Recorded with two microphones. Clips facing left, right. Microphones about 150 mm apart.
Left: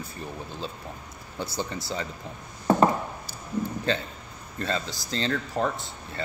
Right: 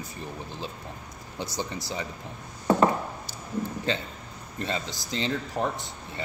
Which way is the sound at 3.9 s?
20° right (ahead or behind).